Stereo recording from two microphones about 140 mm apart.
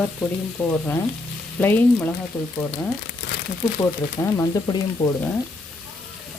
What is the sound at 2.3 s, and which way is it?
Frying, 5° left (ahead or behind).